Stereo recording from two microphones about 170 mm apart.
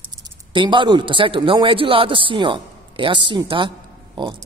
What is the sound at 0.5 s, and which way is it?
A man's voice, 30° right (ahead or behind).